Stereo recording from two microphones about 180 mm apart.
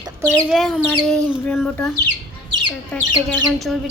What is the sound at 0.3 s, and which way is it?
Speech, centre (ahead or behind).